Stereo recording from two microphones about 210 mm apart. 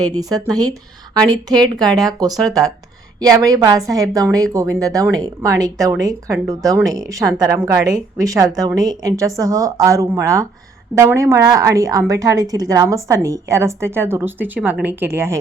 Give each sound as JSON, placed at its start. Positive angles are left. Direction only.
{"t": 0.2, "sound": "speech", "side_deg": -15}